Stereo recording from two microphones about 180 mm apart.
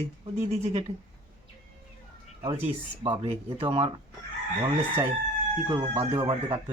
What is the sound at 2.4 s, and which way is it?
Speech, 30° right (ahead or behind).